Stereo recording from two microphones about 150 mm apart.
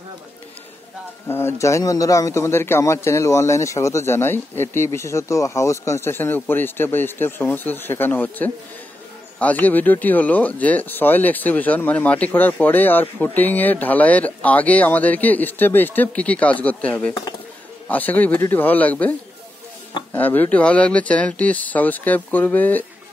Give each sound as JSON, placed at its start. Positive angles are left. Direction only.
{"t": 1.3, "sound": "speech", "side_deg": 20}